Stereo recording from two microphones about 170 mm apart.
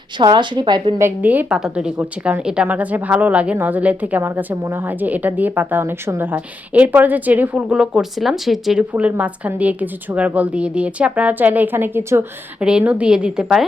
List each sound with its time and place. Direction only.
0.2 s a woman's voice: 25° right (ahead or behind)
0.9 s a woman's voice: 10° right (ahead or behind)